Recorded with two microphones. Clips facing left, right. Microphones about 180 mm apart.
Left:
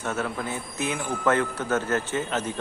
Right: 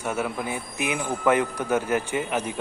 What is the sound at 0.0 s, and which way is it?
Speech, 10° right (ahead or behind).